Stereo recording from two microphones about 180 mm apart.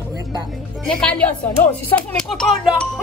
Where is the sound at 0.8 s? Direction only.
5° left (ahead or behind).